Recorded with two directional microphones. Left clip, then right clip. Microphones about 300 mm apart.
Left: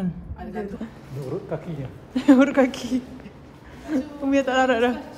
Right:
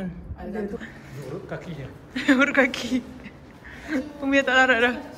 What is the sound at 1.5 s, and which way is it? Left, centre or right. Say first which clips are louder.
A woman's voice: left 4 dB; centre.